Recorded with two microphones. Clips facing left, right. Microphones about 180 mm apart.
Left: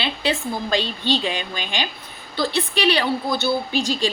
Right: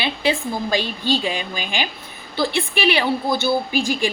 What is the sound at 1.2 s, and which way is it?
A woman's voice, 10° right (ahead or behind).